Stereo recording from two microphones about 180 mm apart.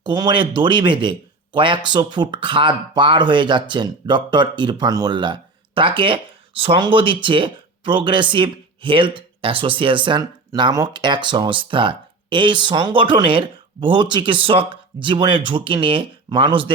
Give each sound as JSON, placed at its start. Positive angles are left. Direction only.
{"t": 0.0, "sound": "speech", "side_deg": -25}